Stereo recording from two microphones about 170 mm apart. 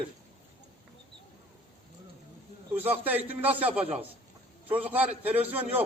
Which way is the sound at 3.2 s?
10° right (ahead or behind).